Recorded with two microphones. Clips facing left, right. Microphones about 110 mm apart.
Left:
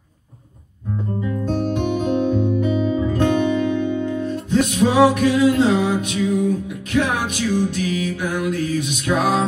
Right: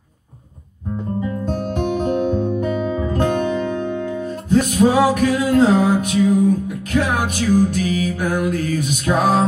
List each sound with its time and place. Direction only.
1.5 s music: 45° right (ahead or behind)